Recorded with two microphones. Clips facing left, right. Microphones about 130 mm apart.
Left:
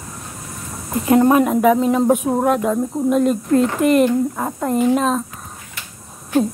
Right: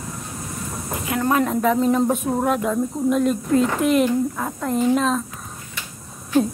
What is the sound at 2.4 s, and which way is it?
Speech, centre (ahead or behind).